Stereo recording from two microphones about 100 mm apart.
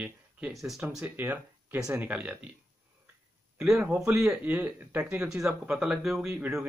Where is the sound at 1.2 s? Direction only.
20° right (ahead or behind).